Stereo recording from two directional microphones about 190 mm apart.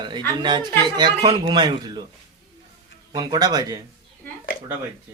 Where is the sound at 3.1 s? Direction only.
20° right (ahead or behind).